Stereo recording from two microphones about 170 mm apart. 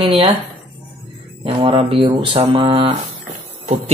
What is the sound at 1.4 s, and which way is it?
Speech, 30° right (ahead or behind).